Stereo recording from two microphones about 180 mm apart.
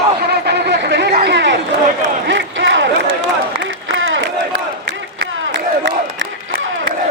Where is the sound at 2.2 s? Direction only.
90° right.